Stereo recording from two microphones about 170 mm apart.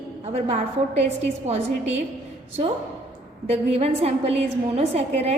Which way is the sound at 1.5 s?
40° right (ahead or behind).